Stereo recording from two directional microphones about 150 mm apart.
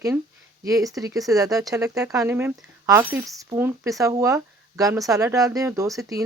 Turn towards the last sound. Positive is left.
turn(degrees=-20)  # may be behind; listen again after turning